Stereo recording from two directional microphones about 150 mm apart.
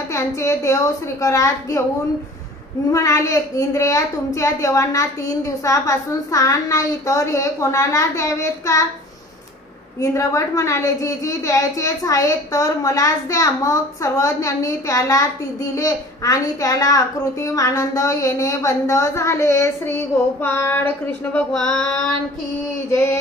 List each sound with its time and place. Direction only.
0.1 s a woman's voice: 20° left (ahead or behind)
2.9 s a child's voice: 20° left (ahead or behind)
9.9 s a child's voice: 20° left (ahead or behind)
20.4 s a sound: 15° left (ahead or behind)